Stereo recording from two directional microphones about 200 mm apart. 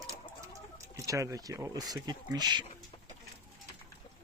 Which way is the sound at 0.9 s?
15° right (ahead or behind).